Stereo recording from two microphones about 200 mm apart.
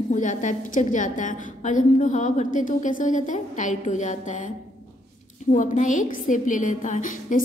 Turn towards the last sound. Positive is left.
turn(degrees=40)  # may be behind; listen again after turning